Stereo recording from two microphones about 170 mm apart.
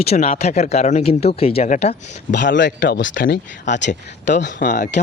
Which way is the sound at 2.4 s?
90° left.